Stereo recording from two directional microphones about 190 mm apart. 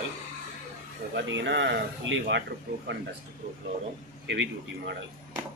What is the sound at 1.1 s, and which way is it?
Speech, 70° right (ahead or behind).